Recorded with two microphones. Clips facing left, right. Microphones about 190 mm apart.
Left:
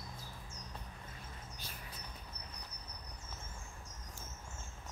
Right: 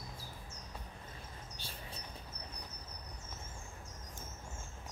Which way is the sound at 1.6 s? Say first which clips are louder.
Right 2 dB; 30° right (ahead or behind).